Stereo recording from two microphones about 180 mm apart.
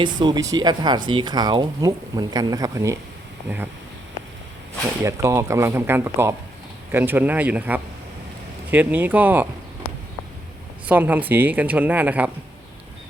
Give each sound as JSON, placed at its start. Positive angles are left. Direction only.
{"t": 0.0, "sound": "speech", "side_deg": -25}
{"t": 5.0, "sound": "speech", "side_deg": -15}
{"t": 10.8, "sound": "speech", "side_deg": -10}